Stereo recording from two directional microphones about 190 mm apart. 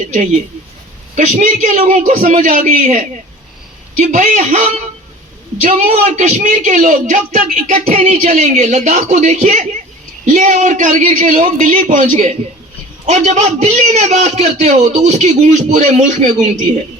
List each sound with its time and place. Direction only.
1.1 s a man's voice: 40° right (ahead or behind)
11.9 s a man's voice: 45° right (ahead or behind)